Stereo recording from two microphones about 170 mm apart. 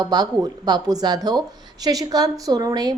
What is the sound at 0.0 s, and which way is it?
A woman's voice, 25° right (ahead or behind).